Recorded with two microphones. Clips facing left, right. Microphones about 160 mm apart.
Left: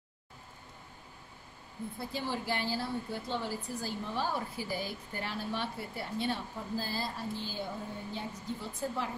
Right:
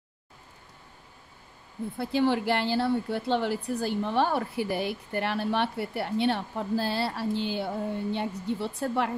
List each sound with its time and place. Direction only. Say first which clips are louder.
2.0 s a woman's voice: right 12 dB; 70° right (ahead or behind)